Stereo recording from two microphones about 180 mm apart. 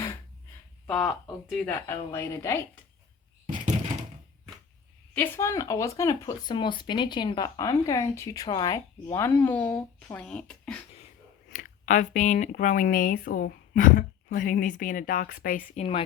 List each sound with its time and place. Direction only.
0.9 s speech: centre (ahead or behind)
1.6 s speech: 15° left (ahead or behind)
5.1 s speech: 10° left (ahead or behind)
11.5 s speech: 45° left (ahead or behind)
15.7 s speech: 35° left (ahead or behind)